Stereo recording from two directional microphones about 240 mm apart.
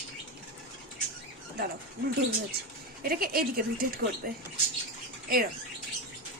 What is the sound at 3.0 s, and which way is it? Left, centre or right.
A woman's voice, right.